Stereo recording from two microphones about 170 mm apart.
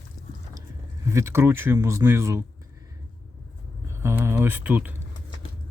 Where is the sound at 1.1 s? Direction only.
15° right (ahead or behind).